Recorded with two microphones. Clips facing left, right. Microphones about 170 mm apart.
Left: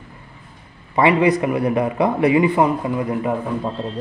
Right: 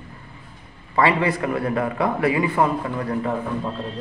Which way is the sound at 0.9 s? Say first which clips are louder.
Left 4 dB; 20° left (ahead or behind).